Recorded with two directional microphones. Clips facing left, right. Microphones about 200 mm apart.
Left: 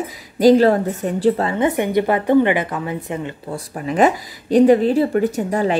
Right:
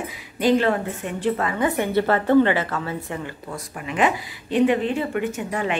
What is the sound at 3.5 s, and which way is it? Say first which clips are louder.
Speech: left 7 dB; 35° left (ahead or behind).